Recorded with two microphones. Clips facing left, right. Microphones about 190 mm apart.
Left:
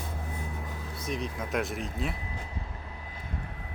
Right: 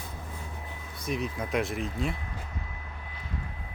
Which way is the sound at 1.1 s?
Centre (ahead or behind).